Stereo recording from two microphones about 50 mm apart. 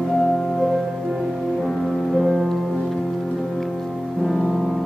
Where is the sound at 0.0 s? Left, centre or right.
Centre.